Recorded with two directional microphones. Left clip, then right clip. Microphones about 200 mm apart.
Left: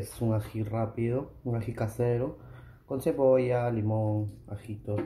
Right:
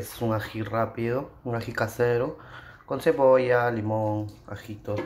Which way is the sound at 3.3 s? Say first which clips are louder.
Right 5 dB; 10° left (ahead or behind).